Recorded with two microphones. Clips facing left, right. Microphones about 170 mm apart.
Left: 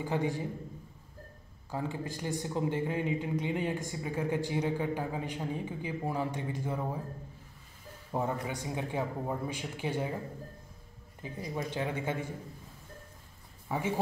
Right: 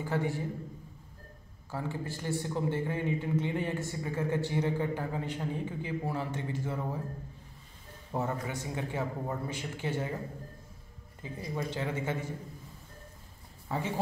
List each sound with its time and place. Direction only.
0.0 s a man's voice: 15° left (ahead or behind)
1.7 s a man's voice: 15° left (ahead or behind)
8.1 s a man's voice: 15° left (ahead or behind)
11.5 s a man's voice: 15° left (ahead or behind)
13.7 s speech: 15° left (ahead or behind)